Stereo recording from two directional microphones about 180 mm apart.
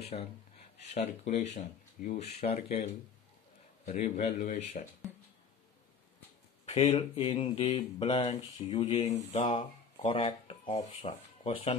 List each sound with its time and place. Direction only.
0.0 s speech: 35° left (ahead or behind)
6.6 s speech: 35° left (ahead or behind)
9.6 s speech: 25° left (ahead or behind)